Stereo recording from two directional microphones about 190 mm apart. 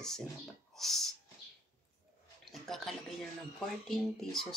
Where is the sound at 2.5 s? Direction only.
Centre (ahead or behind).